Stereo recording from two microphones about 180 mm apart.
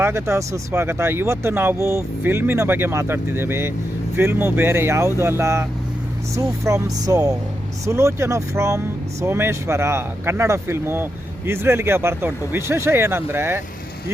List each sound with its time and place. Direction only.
0.0 s speech: 15° right (ahead or behind)
6.7 s speech: 15° right (ahead or behind)